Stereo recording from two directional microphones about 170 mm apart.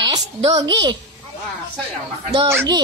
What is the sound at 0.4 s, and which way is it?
Speech, 30° right (ahead or behind).